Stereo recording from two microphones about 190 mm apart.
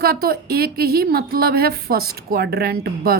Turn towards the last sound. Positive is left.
turn(degrees=-55)  # may be behind; listen again after turning